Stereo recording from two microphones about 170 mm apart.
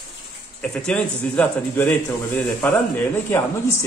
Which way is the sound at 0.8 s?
5° left (ahead or behind).